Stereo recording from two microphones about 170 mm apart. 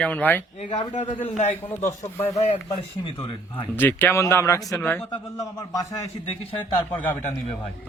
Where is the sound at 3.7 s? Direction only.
10° left (ahead or behind).